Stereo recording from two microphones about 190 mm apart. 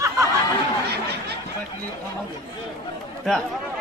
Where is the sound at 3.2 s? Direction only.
Centre (ahead or behind).